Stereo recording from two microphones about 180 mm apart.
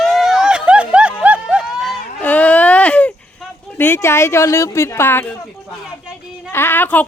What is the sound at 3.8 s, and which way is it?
Speech, 15° left (ahead or behind).